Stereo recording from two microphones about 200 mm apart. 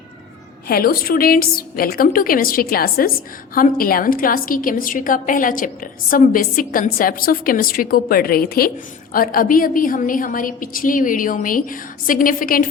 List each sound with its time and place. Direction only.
0.7 s a woman's voice: 50° left (ahead or behind)